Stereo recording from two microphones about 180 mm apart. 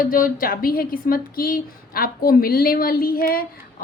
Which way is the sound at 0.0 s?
50° left (ahead or behind).